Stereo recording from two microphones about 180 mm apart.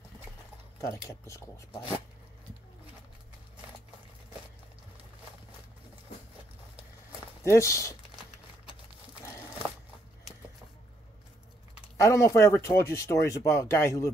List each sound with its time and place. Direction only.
0.7 s speech: 15° left (ahead or behind)
7.4 s speech: 15° left (ahead or behind)
12.0 s speech: 15° left (ahead or behind)